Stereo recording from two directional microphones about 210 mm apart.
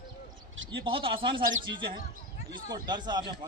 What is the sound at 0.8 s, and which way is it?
Speech, 25° right (ahead or behind).